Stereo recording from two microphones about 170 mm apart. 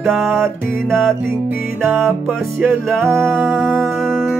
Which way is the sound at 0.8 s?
5° left (ahead or behind).